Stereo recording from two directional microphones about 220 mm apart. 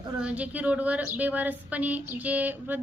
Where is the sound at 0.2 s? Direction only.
5° right (ahead or behind).